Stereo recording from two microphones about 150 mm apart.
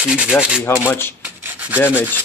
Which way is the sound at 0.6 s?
15° left (ahead or behind).